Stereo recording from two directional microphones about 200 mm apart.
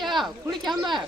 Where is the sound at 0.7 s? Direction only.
20° right (ahead or behind).